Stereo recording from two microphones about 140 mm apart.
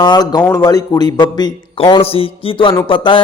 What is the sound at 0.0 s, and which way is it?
A man's voice, 30° left (ahead or behind).